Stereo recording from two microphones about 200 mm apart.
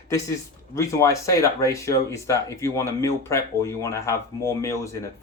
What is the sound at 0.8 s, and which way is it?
Speech, 15° left (ahead or behind).